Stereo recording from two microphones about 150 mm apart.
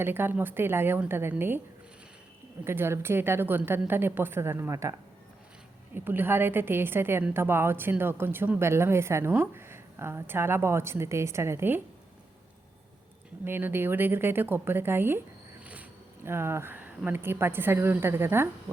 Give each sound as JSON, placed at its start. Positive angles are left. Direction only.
{"t": 0.0, "sound": "a woman's voice", "side_deg": -15}
{"t": 2.6, "sound": "a woman's voice", "side_deg": -15}
{"t": 13.4, "sound": "a woman's voice", "side_deg": -15}